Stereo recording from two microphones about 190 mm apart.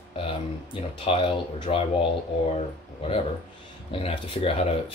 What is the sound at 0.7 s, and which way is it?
Speech, 30° left (ahead or behind).